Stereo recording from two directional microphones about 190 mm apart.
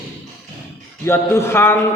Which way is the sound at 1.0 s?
15° left (ahead or behind).